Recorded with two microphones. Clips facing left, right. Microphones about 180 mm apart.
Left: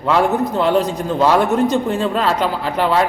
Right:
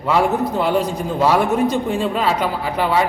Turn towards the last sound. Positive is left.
turn(degrees=-10)  # may be behind; listen again after turning